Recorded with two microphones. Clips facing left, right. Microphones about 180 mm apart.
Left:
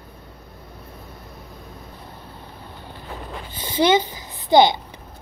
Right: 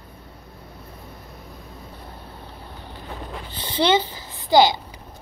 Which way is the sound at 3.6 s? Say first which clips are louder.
Left 2 dB; 15° left (ahead or behind).